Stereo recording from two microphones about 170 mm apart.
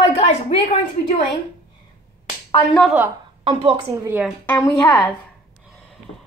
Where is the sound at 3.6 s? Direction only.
35° right (ahead or behind).